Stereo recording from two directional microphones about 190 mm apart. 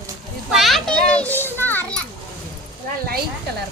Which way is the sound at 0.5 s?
Centre (ahead or behind).